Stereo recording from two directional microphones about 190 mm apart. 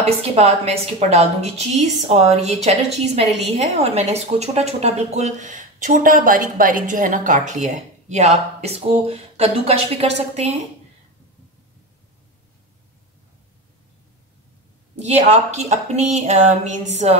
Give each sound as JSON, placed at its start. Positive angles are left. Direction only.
{"t": 0.0, "sound": "a woman's voice", "side_deg": -35}
{"t": 15.0, "sound": "a woman's voice", "side_deg": -35}